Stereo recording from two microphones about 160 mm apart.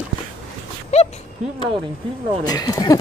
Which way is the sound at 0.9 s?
45° left (ahead or behind).